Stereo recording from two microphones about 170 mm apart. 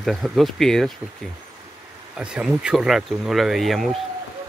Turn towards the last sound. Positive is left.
turn(degrees=0)  # may be behind; listen again after turning